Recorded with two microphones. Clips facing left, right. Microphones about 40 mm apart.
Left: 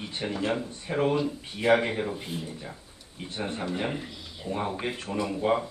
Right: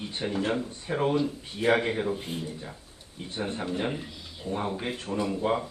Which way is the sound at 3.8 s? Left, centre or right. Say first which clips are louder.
Even; centre.